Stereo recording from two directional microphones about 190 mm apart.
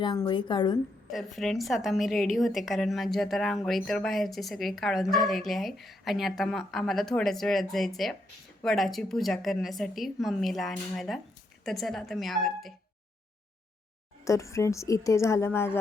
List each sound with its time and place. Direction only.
0.0 s a woman's voice: 25° left (ahead or behind)
1.1 s speech: centre (ahead or behind)
14.3 s a woman's voice: 15° left (ahead or behind)